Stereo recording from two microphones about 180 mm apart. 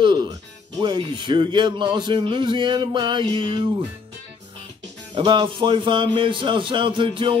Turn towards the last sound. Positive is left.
turn(degrees=-30)  # may be behind; listen again after turning